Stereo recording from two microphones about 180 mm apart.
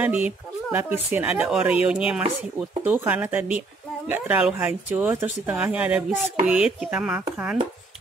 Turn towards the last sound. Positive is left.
turn(degrees=-5)  # may be behind; listen again after turning